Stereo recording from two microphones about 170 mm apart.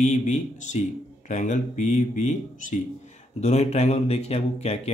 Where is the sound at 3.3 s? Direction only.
40° left (ahead or behind).